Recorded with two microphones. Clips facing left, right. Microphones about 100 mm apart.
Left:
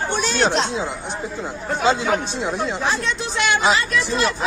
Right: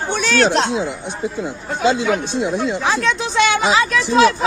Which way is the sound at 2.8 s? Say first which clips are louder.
Right 4 dB; 90° right.